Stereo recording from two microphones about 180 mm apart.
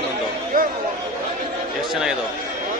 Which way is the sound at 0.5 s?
50° right (ahead or behind).